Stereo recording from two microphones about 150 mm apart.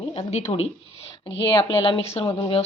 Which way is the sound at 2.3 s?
25° left (ahead or behind).